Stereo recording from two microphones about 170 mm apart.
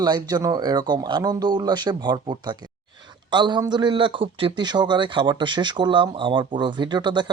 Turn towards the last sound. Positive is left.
turn(degrees=-25)  # may be behind; listen again after turning